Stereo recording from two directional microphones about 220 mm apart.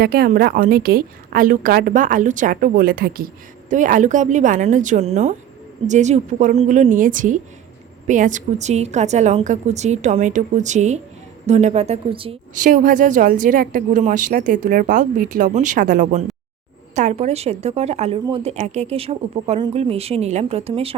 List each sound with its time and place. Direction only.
0.0 s a woman's voice: 45° right (ahead or behind); by 12.4 s 25° right (ahead or behind)
12.5 s a woman's voice: 35° right (ahead or behind)